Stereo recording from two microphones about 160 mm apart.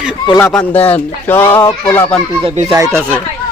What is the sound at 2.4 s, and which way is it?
Speech, 40° right (ahead or behind).